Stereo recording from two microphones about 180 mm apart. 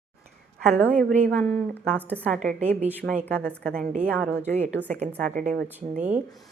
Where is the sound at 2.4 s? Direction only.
40° right (ahead or behind).